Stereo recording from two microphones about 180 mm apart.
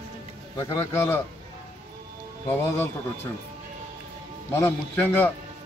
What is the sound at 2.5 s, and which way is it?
Speech, 15° left (ahead or behind).